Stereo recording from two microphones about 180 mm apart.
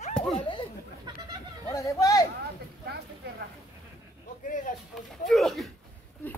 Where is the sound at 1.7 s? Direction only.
20° left (ahead or behind).